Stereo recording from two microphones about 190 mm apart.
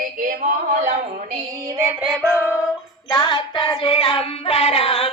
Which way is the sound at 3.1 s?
25° left (ahead or behind).